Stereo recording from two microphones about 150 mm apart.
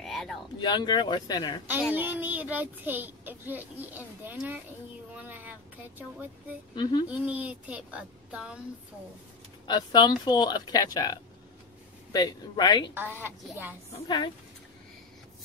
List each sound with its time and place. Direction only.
0.0 s a sound: centre (ahead or behind)
0.6 s speech: 30° left (ahead or behind)
2.0 s a child's voice: 10° right (ahead or behind)
6.7 s speech: 30° left (ahead or behind)
7.1 s a child's voice: 10° right (ahead or behind)
9.7 s speech: 30° left (ahead or behind)
12.9 s a child's voice: 15° right (ahead or behind)
14.0 s speech: 30° left (ahead or behind)